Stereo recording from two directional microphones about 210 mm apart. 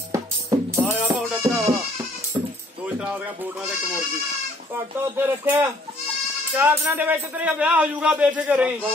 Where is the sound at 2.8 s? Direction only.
5° right (ahead or behind).